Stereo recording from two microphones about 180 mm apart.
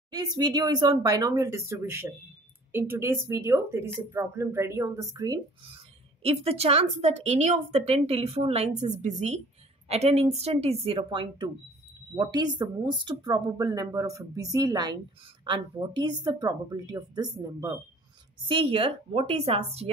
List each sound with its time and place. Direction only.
0.1 s speech: 20° right (ahead or behind)
6.2 s a woman's voice: 35° right (ahead or behind); by 17.7 s 20° right (ahead or behind)
18.5 s a woman's voice: 30° right (ahead or behind)